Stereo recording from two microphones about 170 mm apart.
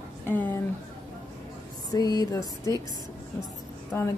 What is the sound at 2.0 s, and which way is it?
Speech, 20° left (ahead or behind).